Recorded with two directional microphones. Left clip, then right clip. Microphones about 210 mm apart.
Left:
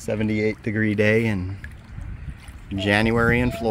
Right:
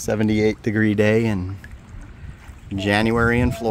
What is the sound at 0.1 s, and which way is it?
Speech, 25° right (ahead or behind).